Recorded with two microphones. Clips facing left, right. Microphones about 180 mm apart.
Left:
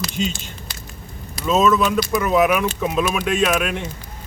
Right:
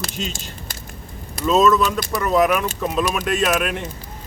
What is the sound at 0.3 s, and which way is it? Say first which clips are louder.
Speech: right 1 dB; 45° right (ahead or behind).